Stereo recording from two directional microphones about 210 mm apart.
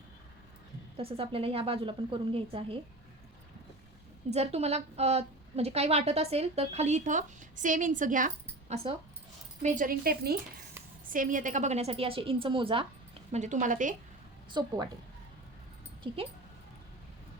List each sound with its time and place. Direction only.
0.9 s a woman's voice: 25° right (ahead or behind)
4.3 s a woman's voice: 30° right (ahead or behind)
8.7 s a woman's voice: 30° right (ahead or behind)
9.6 s a woman's voice: 40° right (ahead or behind)
14.5 s a woman's voice: 20° right (ahead or behind)